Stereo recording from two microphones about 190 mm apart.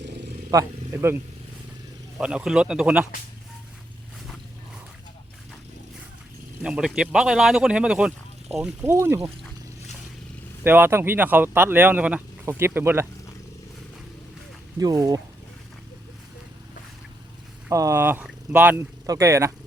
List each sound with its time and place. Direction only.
0.5 s speech: 15° right (ahead or behind)
2.1 s speech: 5° right (ahead or behind)
6.6 s speech: 5° right (ahead or behind)
10.6 s speech: 10° right (ahead or behind)
14.8 s speech: 20° right (ahead or behind)
17.7 s speech: 15° right (ahead or behind)